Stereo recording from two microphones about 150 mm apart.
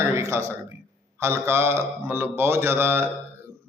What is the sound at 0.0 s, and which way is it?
A man's voice, 15° right (ahead or behind).